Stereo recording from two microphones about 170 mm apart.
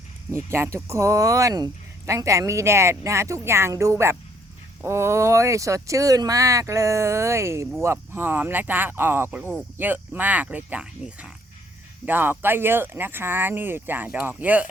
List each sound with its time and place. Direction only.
0.3 s speech: 15° right (ahead or behind)